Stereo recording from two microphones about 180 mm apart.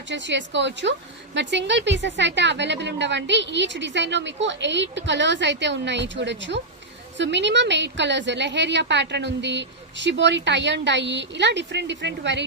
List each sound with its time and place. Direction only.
0.1 s a woman's voice: 80° right